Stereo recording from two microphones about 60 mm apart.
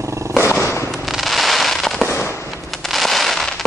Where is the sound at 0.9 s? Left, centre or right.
Centre.